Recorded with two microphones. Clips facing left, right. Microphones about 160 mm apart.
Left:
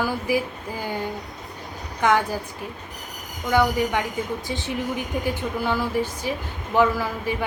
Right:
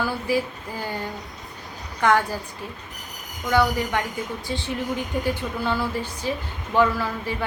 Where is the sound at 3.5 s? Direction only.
15° left (ahead or behind).